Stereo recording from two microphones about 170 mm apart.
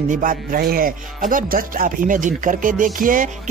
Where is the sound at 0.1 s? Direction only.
55° right (ahead or behind).